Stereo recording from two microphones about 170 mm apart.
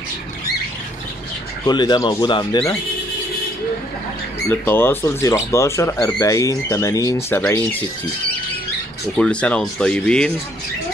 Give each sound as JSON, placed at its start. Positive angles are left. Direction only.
{"t": 1.7, "sound": "speech", "side_deg": 25}
{"t": 4.5, "sound": "speech", "side_deg": 15}
{"t": 9.1, "sound": "speech", "side_deg": 5}